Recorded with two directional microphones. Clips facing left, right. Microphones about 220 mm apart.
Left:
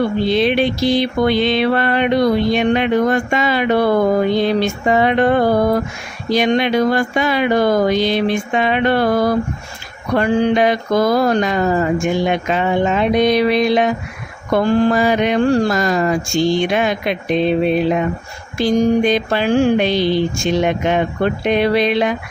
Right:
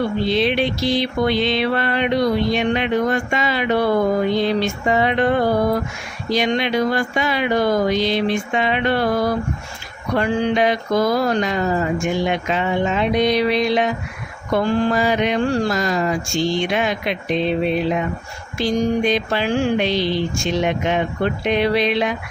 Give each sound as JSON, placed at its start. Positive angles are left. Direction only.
{"t": 0.3, "sound": "mantra", "side_deg": 50}